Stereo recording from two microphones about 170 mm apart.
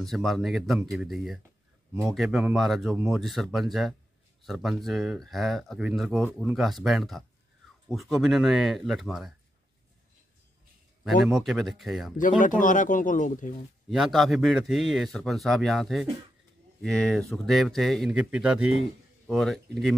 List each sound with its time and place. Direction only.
0.0 s speech: centre (ahead or behind)
11.2 s speech: centre (ahead or behind)
12.2 s speech: 50° left (ahead or behind)
13.8 s a man's voice: centre (ahead or behind)